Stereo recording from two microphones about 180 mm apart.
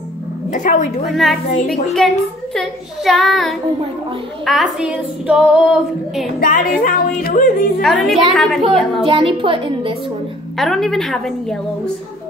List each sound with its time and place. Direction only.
0.5 s music: 45° left (ahead or behind)
1.0 s speech: centre (ahead or behind)
6.4 s music: 50° left (ahead or behind)
7.8 s speech: centre (ahead or behind)
9.0 s a woman's voice: 30° right (ahead or behind)
10.6 s speech: centre (ahead or behind)